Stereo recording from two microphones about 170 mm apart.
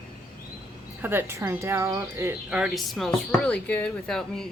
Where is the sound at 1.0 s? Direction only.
10° right (ahead or behind).